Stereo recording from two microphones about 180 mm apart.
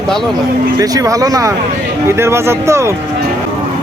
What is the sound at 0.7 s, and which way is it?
Speech, 20° right (ahead or behind).